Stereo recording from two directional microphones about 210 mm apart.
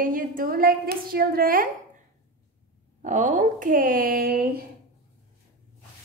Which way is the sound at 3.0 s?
35° right (ahead or behind).